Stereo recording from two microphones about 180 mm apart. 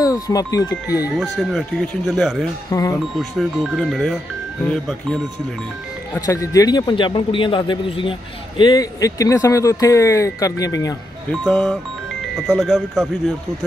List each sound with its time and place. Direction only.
0.0 s a man's voice: 20° left (ahead or behind)
1.1 s speech: centre (ahead or behind)
2.7 s speech: 20° left (ahead or behind)
3.2 s speech: centre (ahead or behind)
6.1 s a man's voice: 15° left (ahead or behind)
11.4 s speech: 5° left (ahead or behind)